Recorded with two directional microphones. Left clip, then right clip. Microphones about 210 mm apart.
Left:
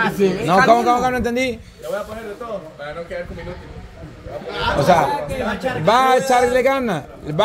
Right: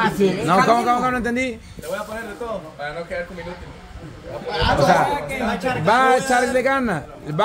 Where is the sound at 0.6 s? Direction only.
10° left (ahead or behind).